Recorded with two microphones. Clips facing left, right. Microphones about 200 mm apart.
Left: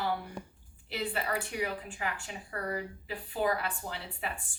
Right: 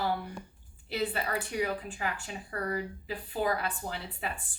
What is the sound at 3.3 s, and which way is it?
Speech, 40° right (ahead or behind).